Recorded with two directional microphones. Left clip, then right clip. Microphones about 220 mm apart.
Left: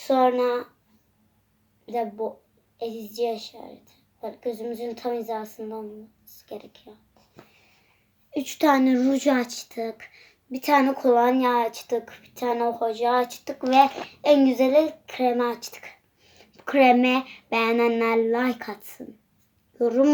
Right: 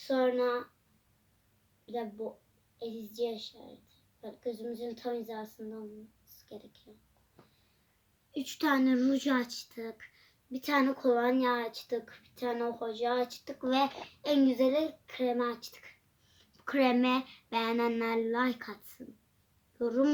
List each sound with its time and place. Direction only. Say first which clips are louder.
0.0 s speech: left 9 dB; 10° right (ahead or behind)
2.8 s speech: left 9 dB; 15° right (ahead or behind)
8.3 s a child's voice: left 10 dB; 25° right (ahead or behind)